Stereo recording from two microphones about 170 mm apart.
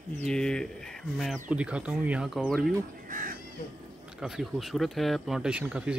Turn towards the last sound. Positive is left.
turn(degrees=-5)  # may be behind; listen again after turning